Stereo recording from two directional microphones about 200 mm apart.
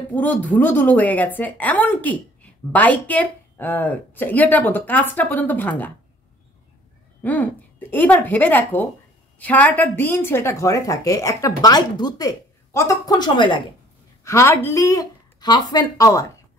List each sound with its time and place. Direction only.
0.1 s a woman's voice: 10° left (ahead or behind)
7.9 s a woman's voice: 10° left (ahead or behind)